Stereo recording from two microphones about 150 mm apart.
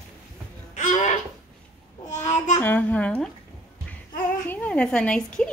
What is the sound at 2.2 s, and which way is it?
Child singing, 50° left (ahead or behind).